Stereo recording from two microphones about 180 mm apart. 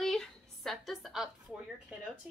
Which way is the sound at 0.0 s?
Centre (ahead or behind).